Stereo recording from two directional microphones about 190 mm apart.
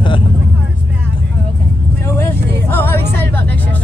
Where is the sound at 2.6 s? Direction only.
10° left (ahead or behind).